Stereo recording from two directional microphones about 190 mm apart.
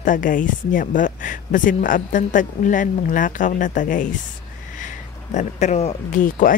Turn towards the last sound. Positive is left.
turn(degrees=45)  # may be behind; listen again after turning